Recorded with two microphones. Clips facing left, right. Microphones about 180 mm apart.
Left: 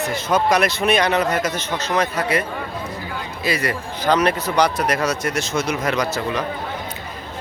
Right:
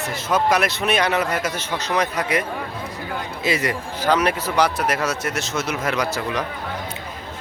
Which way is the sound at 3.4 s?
20° right (ahead or behind).